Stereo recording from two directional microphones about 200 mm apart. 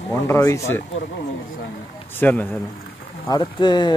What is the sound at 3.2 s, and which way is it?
Speech, 20° left (ahead or behind).